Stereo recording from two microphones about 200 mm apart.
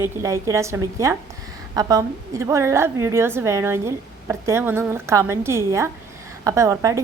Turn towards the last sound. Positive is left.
turn(degrees=-15)  # may be behind; listen again after turning